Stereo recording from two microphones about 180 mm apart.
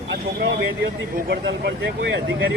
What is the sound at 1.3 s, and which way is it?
Speech, 70° right (ahead or behind).